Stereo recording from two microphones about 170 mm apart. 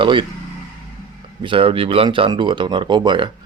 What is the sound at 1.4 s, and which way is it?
Speech, 30° right (ahead or behind).